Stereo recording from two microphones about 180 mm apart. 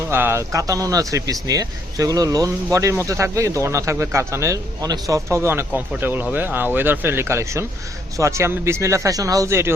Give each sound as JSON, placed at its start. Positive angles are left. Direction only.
{"t": 0.1, "sound": "speech", "side_deg": -15}